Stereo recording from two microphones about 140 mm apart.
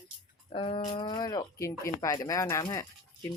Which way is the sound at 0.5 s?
40° left (ahead or behind).